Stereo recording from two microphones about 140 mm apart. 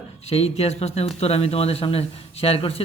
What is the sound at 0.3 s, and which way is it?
Speech, 45° left (ahead or behind).